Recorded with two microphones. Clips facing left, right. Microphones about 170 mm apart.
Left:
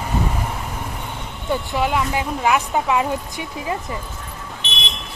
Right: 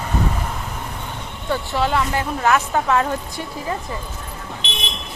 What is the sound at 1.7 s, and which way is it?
Speech, 10° left (ahead or behind).